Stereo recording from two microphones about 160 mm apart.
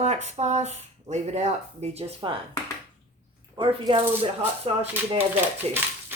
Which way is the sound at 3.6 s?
30° right (ahead or behind).